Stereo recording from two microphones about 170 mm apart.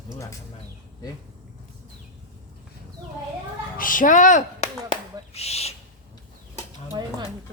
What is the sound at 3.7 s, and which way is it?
Speech, 55° left (ahead or behind).